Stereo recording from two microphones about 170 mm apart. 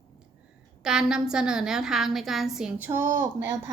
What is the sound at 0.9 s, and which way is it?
A woman's voice, 5° right (ahead or behind).